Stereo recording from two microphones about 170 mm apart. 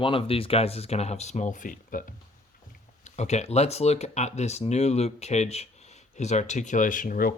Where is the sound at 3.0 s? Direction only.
40° left (ahead or behind).